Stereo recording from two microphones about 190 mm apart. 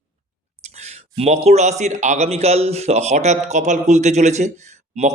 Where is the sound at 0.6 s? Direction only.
35° right (ahead or behind).